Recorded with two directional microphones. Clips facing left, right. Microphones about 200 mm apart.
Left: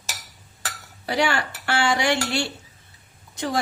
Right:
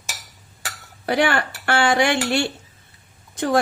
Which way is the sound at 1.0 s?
55° right (ahead or behind).